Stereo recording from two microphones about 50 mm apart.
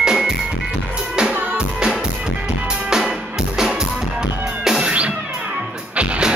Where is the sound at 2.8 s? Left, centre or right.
Centre.